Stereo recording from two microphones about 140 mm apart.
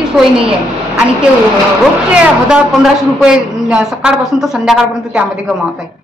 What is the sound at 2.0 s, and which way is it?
A woman's voice, 5° right (ahead or behind).